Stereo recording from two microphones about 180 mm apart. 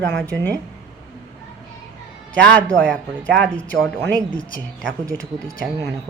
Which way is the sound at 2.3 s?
5° left (ahead or behind).